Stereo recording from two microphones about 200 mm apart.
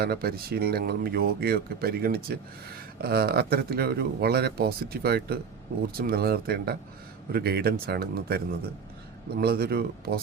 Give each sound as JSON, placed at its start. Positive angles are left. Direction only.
{"t": 0.0, "sound": "speech", "side_deg": -50}